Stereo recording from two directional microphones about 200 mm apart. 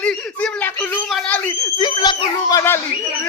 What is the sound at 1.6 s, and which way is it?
Screaming, 20° left (ahead or behind).